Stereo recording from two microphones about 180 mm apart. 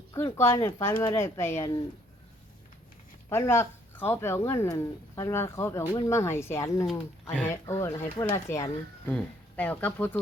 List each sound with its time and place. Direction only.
0.1 s speech: 15° left (ahead or behind)
3.2 s speech: 15° left (ahead or behind)